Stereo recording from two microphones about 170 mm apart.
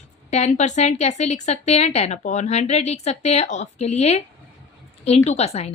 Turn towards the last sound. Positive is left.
turn(degrees=40)  # may be behind; listen again after turning